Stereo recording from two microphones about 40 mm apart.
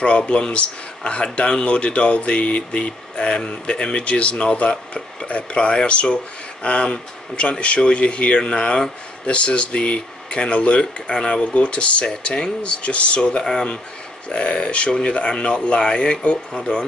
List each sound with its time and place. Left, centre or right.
0.0 s speech: left
11.4 s speech: left
13.4 s speech: centre
14.3 s speech: left